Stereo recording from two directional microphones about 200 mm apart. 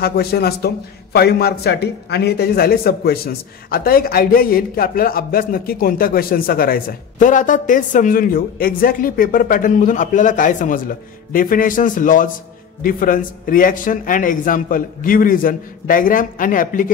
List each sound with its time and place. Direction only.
0.0 s a man's voice: 50° left (ahead or behind)